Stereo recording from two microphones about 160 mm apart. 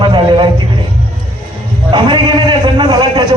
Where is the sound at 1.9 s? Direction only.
30° right (ahead or behind).